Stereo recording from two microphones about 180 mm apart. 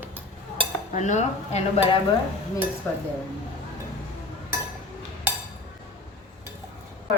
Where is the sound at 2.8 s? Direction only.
10° left (ahead or behind).